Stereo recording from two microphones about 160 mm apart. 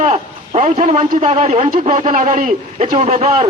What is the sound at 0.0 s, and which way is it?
A man's voice, 50° right (ahead or behind).